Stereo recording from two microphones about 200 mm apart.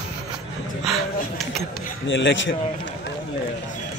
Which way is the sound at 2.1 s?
65° left (ahead or behind).